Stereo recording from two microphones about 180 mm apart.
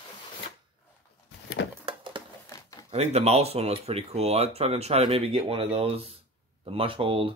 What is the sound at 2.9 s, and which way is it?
Speech, 35° right (ahead or behind).